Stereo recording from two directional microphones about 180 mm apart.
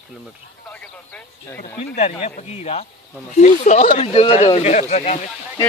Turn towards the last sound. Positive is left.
turn(degrees=40)  # may be behind; listen again after turning